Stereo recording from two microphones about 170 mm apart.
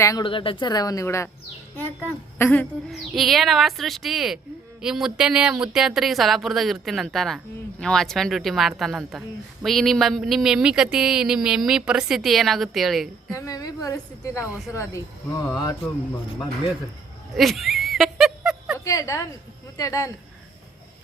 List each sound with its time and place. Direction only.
0.0 s a woman's voice: 25° left (ahead or behind)
2.4 s speech: 10° left (ahead or behind)
13.3 s a woman's voice: 20° left (ahead or behind)
17.3 s speech: centre (ahead or behind)
18.9 s a woman's voice: 20° left (ahead or behind)